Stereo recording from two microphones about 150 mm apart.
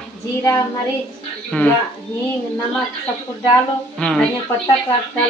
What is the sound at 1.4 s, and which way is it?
Speech, 5° left (ahead or behind).